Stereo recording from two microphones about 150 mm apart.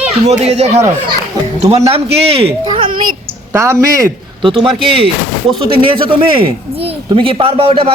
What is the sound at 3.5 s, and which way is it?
Speech, 20° right (ahead or behind).